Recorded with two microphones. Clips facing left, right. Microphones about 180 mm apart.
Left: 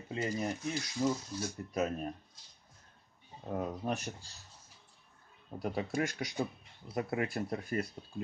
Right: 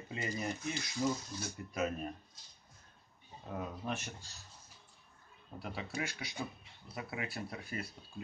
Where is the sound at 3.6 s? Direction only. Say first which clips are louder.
Left 4 dB; 40° left (ahead or behind).